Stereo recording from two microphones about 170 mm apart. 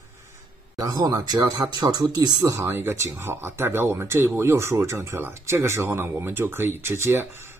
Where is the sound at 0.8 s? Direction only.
20° right (ahead or behind).